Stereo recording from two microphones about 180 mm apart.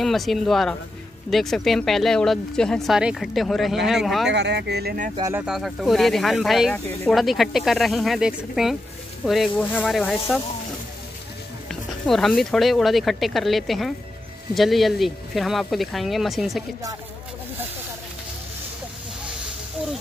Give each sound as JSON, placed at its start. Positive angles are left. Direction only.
{"t": 0.0, "sound": "speech", "side_deg": 0}
{"t": 4.3, "sound": "speech", "side_deg": -70}
{"t": 5.3, "sound": "speech", "side_deg": -5}
{"t": 6.7, "sound": "speech", "side_deg": 10}
{"t": 7.2, "sound": "speech", "side_deg": 0}
{"t": 11.7, "sound": "speech", "side_deg": 0}